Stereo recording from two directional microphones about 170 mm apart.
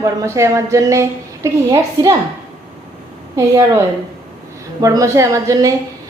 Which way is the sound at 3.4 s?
15° right (ahead or behind).